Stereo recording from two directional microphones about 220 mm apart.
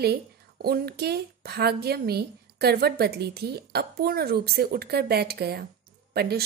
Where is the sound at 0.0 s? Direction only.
45° right (ahead or behind).